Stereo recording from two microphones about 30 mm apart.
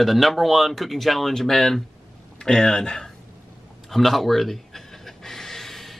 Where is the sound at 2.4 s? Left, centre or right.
Left.